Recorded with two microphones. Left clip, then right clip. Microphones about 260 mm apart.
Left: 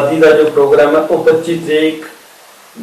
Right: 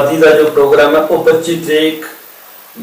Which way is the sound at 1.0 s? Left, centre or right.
Left.